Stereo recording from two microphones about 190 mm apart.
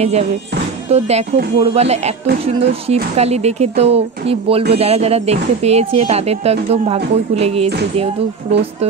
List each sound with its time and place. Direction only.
0.8 s speech: 35° right (ahead or behind)